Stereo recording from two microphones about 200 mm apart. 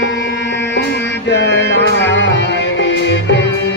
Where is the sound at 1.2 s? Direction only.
60° left (ahead or behind).